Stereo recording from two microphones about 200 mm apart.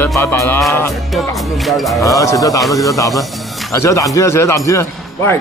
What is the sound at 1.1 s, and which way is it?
Speech, centre (ahead or behind).